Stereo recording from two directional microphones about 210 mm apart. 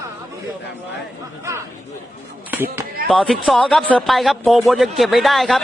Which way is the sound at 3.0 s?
5° left (ahead or behind).